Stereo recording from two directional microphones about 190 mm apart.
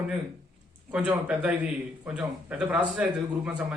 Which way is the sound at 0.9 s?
5° right (ahead or behind).